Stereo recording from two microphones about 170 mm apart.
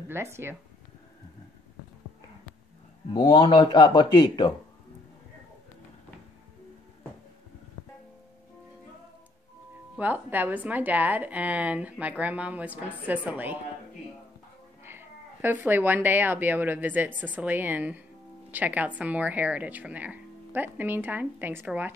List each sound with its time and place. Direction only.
0.1 s speech: 15° right (ahead or behind)
3.1 s a man's voice: 30° left (ahead or behind)
9.9 s speech: 10° right (ahead or behind)
14.9 s speech: 15° right (ahead or behind)